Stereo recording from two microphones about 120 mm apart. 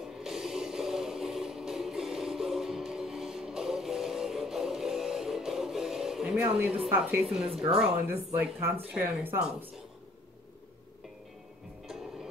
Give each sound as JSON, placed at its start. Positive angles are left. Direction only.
{"t": 0.0, "sound": "music", "side_deg": -5}
{"t": 6.4, "sound": "speech", "side_deg": -15}
{"t": 7.2, "sound": "a woman's voice", "side_deg": 0}
{"t": 8.1, "sound": "speech", "side_deg": -15}